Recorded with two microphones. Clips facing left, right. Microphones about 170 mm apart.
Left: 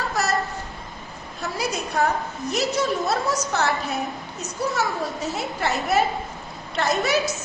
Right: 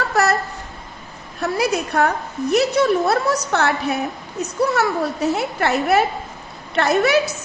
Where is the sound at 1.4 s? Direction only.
65° right (ahead or behind).